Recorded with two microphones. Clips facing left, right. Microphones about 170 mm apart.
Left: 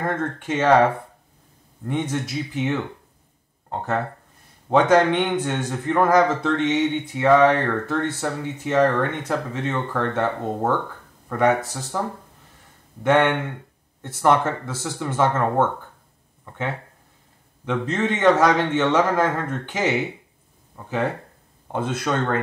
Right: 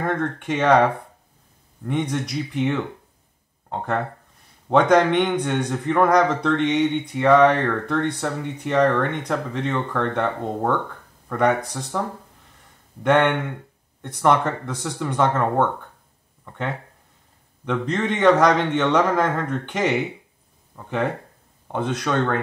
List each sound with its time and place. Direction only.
0.0 s a man's voice: 5° left (ahead or behind)
1.9 s a man's voice: 5° left (ahead or behind)
13.1 s a man's voice: 5° left (ahead or behind)